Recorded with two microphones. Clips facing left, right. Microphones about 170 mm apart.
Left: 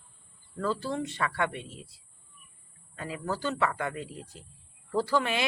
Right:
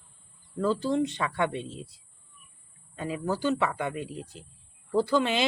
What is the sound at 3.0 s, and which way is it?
Speech, 20° right (ahead or behind).